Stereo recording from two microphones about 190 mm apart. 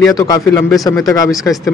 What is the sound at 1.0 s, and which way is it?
Speech, 20° left (ahead or behind).